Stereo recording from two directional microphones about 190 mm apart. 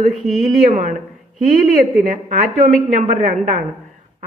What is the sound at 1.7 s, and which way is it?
A woman's voice, 45° right (ahead or behind).